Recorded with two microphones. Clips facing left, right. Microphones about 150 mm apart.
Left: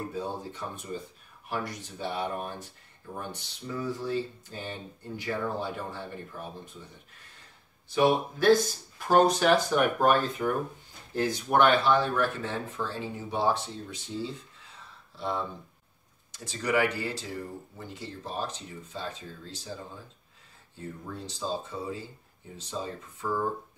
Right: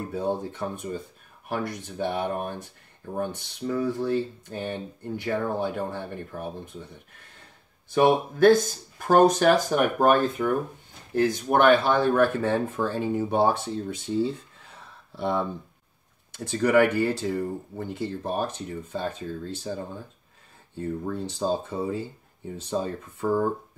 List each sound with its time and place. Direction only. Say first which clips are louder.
0.1 s speech: right 7 dB; 55° right (ahead or behind)
7.9 s speech: right 4 dB; 50° right (ahead or behind)
21.0 s speech: right 6 dB; 60° right (ahead or behind)